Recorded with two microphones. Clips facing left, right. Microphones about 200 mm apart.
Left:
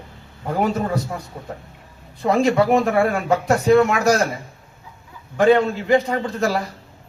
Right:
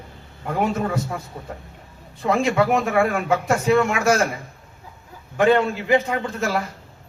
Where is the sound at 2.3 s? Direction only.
35° left (ahead or behind).